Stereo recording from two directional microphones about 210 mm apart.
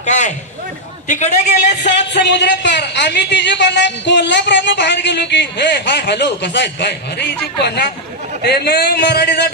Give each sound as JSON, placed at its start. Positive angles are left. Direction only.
{"t": 0.0, "sound": "a man's voice", "side_deg": 35}
{"t": 1.8, "sound": "speech", "side_deg": 55}
{"t": 8.4, "sound": "speech", "side_deg": 50}